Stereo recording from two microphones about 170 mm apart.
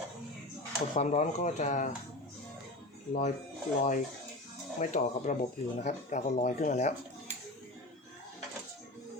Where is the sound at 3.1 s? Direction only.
45° left (ahead or behind).